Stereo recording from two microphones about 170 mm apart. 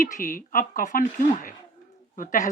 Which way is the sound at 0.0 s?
50° left (ahead or behind).